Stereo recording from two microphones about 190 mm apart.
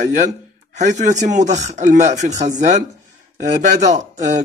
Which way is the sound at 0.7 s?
40° right (ahead or behind).